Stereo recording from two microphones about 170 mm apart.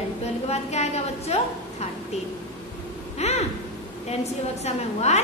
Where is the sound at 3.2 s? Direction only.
40° left (ahead or behind).